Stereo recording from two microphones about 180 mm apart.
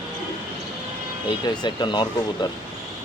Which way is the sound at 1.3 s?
25° left (ahead or behind).